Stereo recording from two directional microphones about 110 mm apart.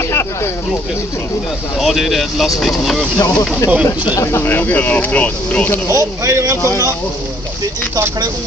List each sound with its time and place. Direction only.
0.1 s speech: 25° left (ahead or behind)
1.8 s speech: centre (ahead or behind)
3.2 s speech: 30° left (ahead or behind); by 5.8 s 15° left (ahead or behind)
5.9 s speech: 25° right (ahead or behind)